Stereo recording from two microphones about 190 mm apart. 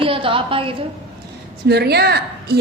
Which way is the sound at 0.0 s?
30° right (ahead or behind).